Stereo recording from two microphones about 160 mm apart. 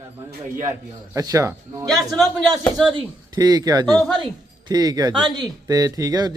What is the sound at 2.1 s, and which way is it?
Speech, centre (ahead or behind).